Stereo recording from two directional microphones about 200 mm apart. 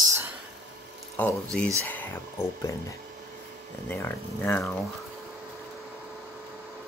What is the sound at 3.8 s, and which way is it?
Speech, 10° left (ahead or behind).